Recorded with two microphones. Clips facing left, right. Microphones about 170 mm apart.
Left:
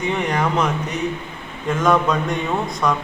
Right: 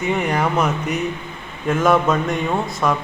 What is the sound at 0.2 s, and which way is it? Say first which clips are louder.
A man's voice: right 1 dB; 5° right (ahead or behind).